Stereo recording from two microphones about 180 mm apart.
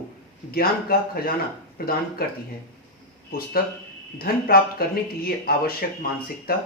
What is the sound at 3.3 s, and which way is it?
A man's voice, 55° left (ahead or behind).